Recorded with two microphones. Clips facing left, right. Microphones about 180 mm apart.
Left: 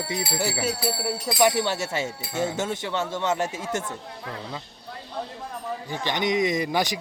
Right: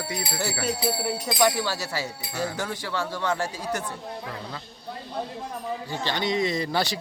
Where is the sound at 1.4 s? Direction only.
20° left (ahead or behind).